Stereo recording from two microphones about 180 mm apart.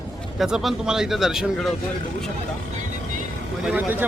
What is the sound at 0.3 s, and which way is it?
Speech, centre (ahead or behind).